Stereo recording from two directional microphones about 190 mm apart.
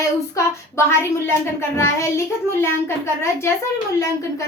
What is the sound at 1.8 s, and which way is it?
A woman's voice, 15° left (ahead or behind).